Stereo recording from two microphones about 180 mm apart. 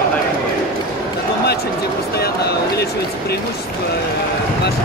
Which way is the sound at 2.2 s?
65° left (ahead or behind).